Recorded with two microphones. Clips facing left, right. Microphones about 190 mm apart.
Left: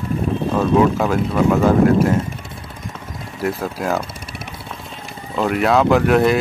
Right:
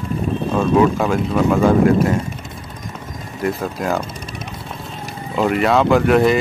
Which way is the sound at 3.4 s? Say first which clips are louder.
Right 1 dB; 5° left (ahead or behind).